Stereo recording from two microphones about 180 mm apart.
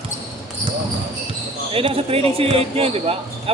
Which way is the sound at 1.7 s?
30° right (ahead or behind).